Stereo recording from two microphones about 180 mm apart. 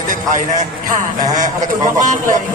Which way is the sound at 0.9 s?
45° right (ahead or behind).